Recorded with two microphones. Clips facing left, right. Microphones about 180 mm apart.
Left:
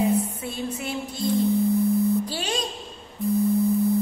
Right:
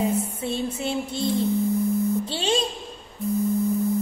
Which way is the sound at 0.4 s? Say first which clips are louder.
Right 3 dB; 25° right (ahead or behind).